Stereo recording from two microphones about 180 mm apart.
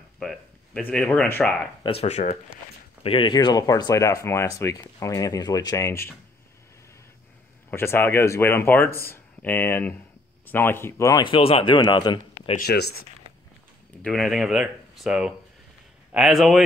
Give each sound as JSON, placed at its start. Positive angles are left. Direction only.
{"t": 0.2, "sound": "speech", "side_deg": 5}
{"t": 1.8, "sound": "speech", "side_deg": 30}
{"t": 7.7, "sound": "speech", "side_deg": 15}
{"t": 12.5, "sound": "speech", "side_deg": 60}
{"t": 14.0, "sound": "speech", "side_deg": 0}